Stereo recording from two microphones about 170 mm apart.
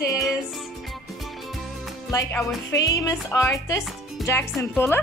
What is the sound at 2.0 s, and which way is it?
Speech, 20° left (ahead or behind).